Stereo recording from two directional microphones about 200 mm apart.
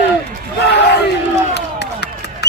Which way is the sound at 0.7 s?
55° left (ahead or behind).